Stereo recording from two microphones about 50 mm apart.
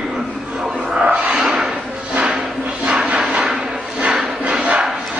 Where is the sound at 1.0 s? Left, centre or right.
Right.